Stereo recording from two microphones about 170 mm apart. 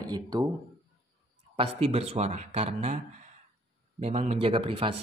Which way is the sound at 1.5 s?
35° right (ahead or behind).